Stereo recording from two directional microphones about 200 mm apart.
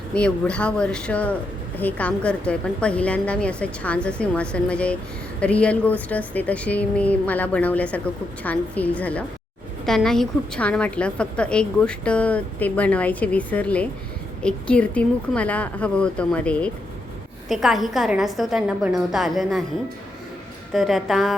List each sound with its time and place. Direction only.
0.1 s a woman's voice: 5° left (ahead or behind)
20.7 s speech: centre (ahead or behind)